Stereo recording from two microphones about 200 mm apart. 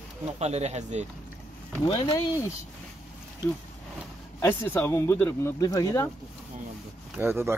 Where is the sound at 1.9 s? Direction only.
20° left (ahead or behind).